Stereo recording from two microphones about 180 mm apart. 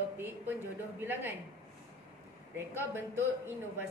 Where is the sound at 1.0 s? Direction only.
10° right (ahead or behind).